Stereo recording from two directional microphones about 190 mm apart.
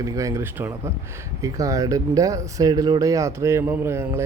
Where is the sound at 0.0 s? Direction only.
15° right (ahead or behind).